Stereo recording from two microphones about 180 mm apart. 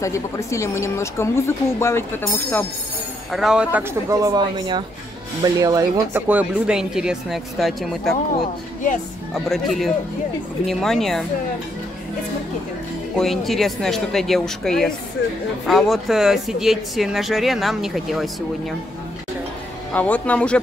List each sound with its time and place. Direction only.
0.0 s speech: 15° left (ahead or behind)
3.3 s speech: centre (ahead or behind)
4.1 s speech: 20° right (ahead or behind); by 8.2 s centre (ahead or behind)
9.3 s speech: centre (ahead or behind)
13.1 s speech: centre (ahead or behind)
19.9 s speech: 10° left (ahead or behind)